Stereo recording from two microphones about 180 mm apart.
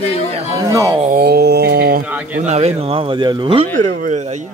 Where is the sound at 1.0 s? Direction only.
55° right (ahead or behind).